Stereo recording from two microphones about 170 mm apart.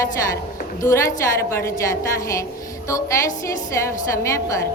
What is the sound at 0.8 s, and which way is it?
Speech, 15° left (ahead or behind).